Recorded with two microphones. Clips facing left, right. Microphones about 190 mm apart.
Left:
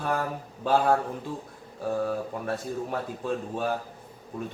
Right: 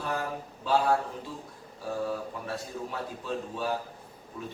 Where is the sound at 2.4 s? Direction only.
50° left (ahead or behind).